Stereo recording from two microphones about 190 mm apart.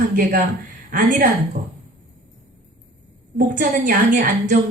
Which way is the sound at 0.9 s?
45° right (ahead or behind).